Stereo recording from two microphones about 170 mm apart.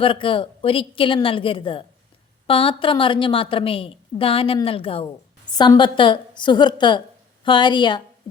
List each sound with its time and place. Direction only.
0.0 s a woman's voice: 30° left (ahead or behind)